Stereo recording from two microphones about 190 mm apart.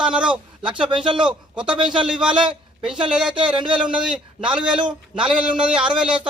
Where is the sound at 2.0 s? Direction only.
5° right (ahead or behind).